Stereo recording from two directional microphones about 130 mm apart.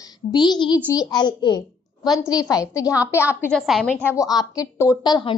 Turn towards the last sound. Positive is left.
turn(degrees=35)  # may be behind; listen again after turning